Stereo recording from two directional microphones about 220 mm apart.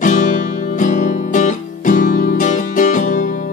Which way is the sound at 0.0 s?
35° left (ahead or behind).